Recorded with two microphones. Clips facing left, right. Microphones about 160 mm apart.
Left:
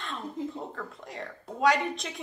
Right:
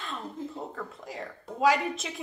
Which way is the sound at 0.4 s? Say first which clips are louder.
Left 5 dB; 20° left (ahead or behind).